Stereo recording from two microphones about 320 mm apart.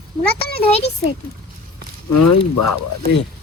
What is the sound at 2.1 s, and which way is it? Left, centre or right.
Speech, left.